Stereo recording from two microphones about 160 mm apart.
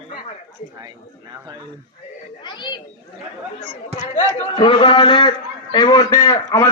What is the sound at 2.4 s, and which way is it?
Chatter, 30° left (ahead or behind).